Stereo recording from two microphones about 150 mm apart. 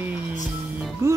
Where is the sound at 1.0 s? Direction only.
15° right (ahead or behind).